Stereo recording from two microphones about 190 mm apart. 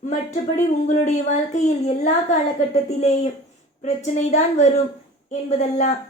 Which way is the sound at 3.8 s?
40° left (ahead or behind).